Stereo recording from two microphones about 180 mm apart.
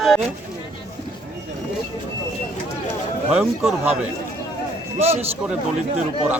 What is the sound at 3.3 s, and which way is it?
Speech, 5° right (ahead or behind).